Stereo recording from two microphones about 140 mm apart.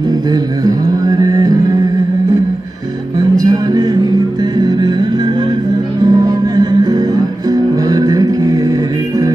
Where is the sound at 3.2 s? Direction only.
25° right (ahead or behind).